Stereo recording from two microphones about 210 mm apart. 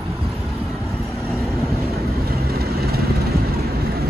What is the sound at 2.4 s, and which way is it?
Vehicle, 45° right (ahead or behind).